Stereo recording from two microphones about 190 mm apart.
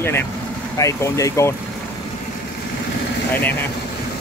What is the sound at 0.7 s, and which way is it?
Speech, 15° left (ahead or behind).